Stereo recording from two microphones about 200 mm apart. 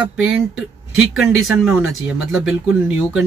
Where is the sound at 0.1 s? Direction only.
5° right (ahead or behind).